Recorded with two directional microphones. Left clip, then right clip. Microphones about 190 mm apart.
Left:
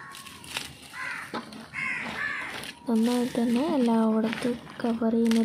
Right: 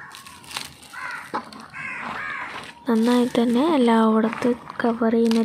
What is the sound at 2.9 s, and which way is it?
Speech, 65° right (ahead or behind).